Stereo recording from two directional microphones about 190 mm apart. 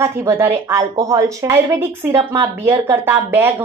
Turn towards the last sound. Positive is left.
turn(degrees=-10)  # may be behind; listen again after turning